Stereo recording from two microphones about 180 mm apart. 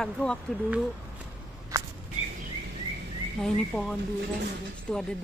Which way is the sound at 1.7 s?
15° right (ahead or behind).